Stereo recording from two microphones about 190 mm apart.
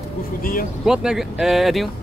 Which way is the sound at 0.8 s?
5° right (ahead or behind).